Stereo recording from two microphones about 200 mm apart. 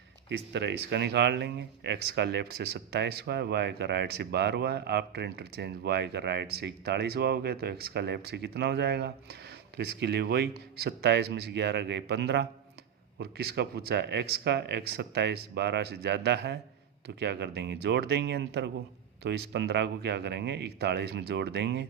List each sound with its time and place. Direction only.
0.3 s speech: 60° right (ahead or behind)